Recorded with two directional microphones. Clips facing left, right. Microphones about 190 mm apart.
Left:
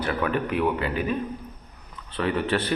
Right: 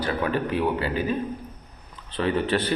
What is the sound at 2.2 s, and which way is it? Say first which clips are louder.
Speech: right 1 dB; 35° right (ahead or behind).